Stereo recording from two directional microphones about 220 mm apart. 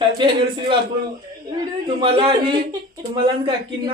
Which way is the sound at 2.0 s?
20° right (ahead or behind).